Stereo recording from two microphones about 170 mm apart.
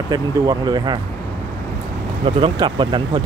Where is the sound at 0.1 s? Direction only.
25° right (ahead or behind).